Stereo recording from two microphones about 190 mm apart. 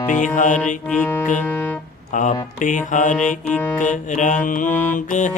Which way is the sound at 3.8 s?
40° left (ahead or behind).